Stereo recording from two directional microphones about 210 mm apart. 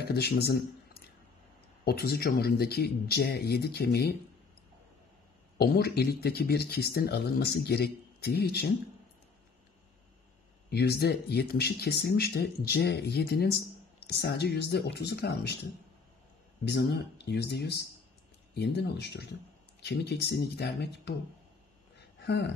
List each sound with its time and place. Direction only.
0.0 s speech: 50° left (ahead or behind)
1.9 s speech: 50° left (ahead or behind)
5.6 s speech: 45° left (ahead or behind)
10.7 s speech: 50° left (ahead or behind)
16.9 s speech: 50° left (ahead or behind)
22.2 s speech: 55° left (ahead or behind)